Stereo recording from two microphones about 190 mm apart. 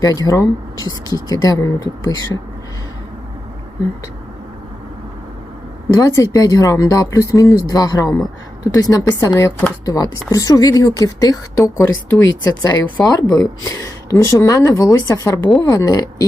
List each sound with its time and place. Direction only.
0.0 s speech: 20° left (ahead or behind)
5.9 s speech: 15° left (ahead or behind)